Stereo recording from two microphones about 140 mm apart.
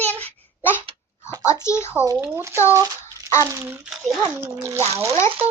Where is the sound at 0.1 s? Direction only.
10° left (ahead or behind).